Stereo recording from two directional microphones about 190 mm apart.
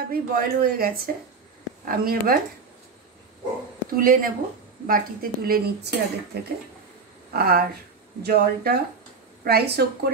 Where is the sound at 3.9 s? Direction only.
50° right (ahead or behind).